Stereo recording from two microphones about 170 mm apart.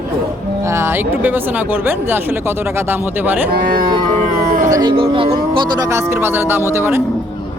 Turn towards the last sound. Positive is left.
turn(degrees=-15)  # may be behind; listen again after turning